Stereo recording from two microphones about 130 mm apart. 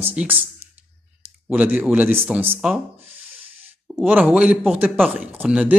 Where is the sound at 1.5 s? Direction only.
10° right (ahead or behind).